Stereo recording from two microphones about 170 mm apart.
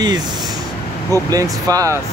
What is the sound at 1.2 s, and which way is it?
Speech, 20° right (ahead or behind).